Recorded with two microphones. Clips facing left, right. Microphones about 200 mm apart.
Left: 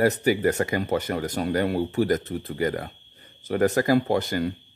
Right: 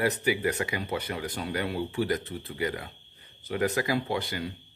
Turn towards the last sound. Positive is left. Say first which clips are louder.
# left 7 dB
turn(degrees=45)  # may be behind; listen again after turning